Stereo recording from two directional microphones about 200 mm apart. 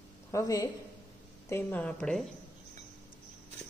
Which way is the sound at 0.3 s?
15° left (ahead or behind).